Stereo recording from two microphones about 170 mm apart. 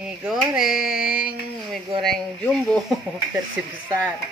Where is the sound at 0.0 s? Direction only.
5° right (ahead or behind).